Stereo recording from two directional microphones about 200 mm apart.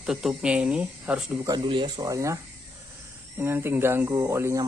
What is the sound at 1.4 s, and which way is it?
Speech, 25° right (ahead or behind).